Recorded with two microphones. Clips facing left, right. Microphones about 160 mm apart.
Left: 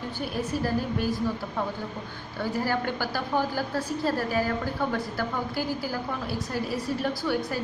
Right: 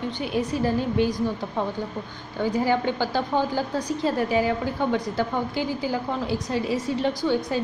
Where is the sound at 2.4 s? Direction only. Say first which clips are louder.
Right 5 dB; 20° right (ahead or behind).